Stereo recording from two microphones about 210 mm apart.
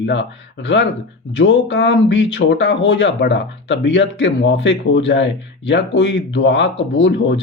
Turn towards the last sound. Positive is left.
turn(degrees=60)  # may be behind; listen again after turning